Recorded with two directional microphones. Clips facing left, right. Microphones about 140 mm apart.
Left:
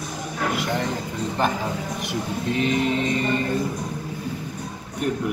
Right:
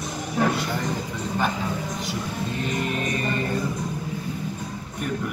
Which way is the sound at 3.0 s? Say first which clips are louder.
Left 3 dB; 25° left (ahead or behind).